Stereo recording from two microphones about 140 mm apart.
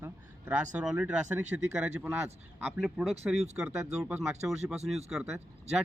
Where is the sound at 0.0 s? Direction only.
15° right (ahead or behind).